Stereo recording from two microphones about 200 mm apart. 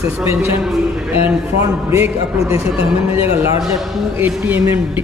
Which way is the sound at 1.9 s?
15° right (ahead or behind).